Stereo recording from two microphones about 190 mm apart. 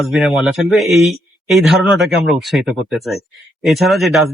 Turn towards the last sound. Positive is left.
turn(degrees=0)  # may be behind; listen again after turning